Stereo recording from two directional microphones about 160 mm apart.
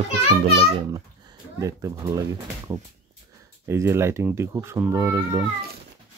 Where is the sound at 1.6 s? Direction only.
20° right (ahead or behind).